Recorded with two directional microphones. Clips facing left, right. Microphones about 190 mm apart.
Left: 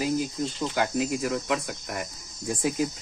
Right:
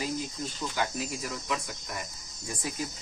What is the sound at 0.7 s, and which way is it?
Speech, 60° left (ahead or behind).